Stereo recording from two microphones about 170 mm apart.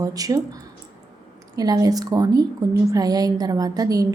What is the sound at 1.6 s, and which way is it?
A woman's voice, 20° right (ahead or behind).